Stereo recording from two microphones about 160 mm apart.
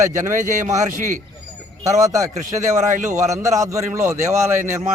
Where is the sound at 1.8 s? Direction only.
20° right (ahead or behind).